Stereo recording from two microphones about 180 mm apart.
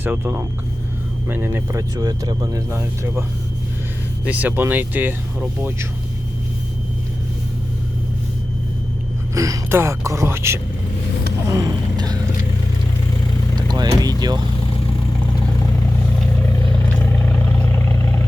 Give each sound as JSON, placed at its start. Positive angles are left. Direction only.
{"t": 0.0, "sound": "speech", "side_deg": -10}
{"t": 4.3, "sound": "speech", "side_deg": -10}
{"t": 9.3, "sound": "speech", "side_deg": -20}
{"t": 11.4, "sound": "a sound", "side_deg": -20}
{"t": 13.6, "sound": "vehicle", "side_deg": -25}
{"t": 16.9, "sound": "vehicle", "side_deg": 10}